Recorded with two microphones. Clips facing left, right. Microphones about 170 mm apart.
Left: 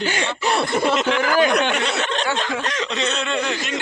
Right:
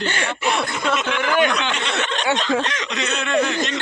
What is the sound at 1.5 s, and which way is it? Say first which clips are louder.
Snicker: left 5 dB; 50° left (ahead or behind).